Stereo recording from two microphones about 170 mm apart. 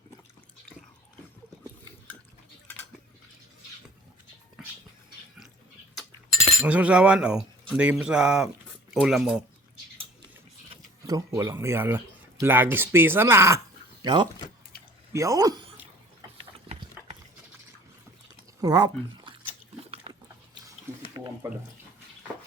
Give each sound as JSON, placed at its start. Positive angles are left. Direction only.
{"t": 6.6, "sound": "speech", "side_deg": -5}
{"t": 11.0, "sound": "speech", "side_deg": -15}
{"t": 14.0, "sound": "speech", "side_deg": -25}
{"t": 18.6, "sound": "speech", "side_deg": -25}
{"t": 21.1, "sound": "a sound", "side_deg": -15}